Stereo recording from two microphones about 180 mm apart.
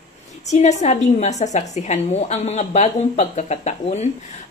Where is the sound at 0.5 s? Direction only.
40° left (ahead or behind).